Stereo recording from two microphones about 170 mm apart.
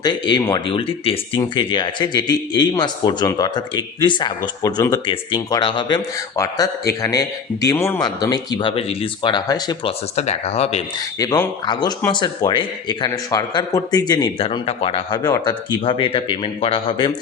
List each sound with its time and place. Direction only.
0.0 s speech: 25° left (ahead or behind)
10.2 s speech: 40° left (ahead or behind)
11.2 s speech: 20° left (ahead or behind)